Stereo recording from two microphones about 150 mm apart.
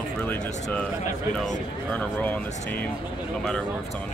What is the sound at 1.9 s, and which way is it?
Speech, 10° left (ahead or behind).